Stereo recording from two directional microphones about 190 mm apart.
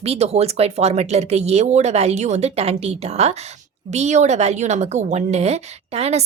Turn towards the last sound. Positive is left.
turn(degrees=-35)  # may be behind; listen again after turning